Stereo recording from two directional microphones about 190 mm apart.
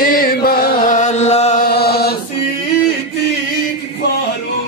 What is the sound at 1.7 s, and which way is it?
Chant, 55° left (ahead or behind).